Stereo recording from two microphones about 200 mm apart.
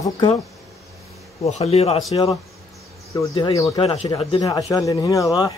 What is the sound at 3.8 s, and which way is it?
Speech, 30° left (ahead or behind).